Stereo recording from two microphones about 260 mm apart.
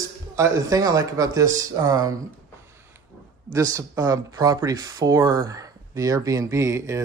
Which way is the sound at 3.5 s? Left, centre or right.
Centre.